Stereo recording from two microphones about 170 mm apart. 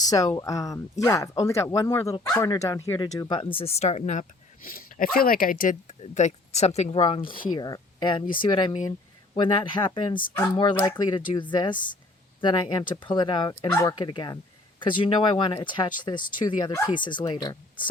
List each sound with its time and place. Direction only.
0.0 s speech: 20° left (ahead or behind); by 6.0 s 55° left (ahead or behind)
6.0 s speech: 40° left (ahead or behind); by 17.8 s 25° left (ahead or behind)